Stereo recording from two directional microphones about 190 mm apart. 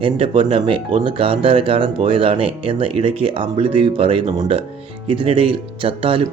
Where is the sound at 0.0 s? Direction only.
25° right (ahead or behind).